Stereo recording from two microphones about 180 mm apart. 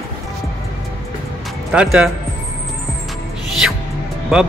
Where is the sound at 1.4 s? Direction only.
5° right (ahead or behind).